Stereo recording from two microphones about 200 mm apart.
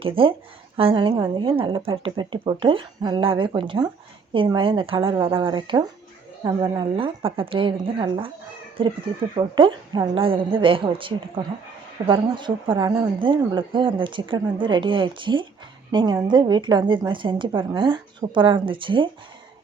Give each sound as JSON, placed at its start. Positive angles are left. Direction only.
{"t": 0.0, "sound": "a woman's voice", "side_deg": -25}